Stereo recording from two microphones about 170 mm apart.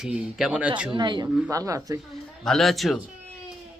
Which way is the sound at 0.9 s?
25° right (ahead or behind).